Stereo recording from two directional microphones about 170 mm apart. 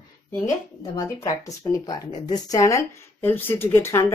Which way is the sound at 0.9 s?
20° left (ahead or behind).